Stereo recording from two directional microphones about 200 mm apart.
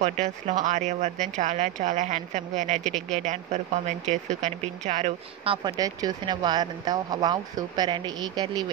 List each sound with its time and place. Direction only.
0.0 s speech: 35° right (ahead or behind)